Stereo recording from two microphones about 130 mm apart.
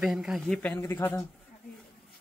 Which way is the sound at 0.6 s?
15° left (ahead or behind).